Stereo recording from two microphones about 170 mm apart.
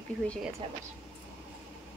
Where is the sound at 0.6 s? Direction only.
35° right (ahead or behind).